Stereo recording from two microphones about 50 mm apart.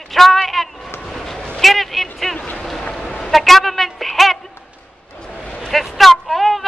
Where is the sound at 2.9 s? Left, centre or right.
Centre.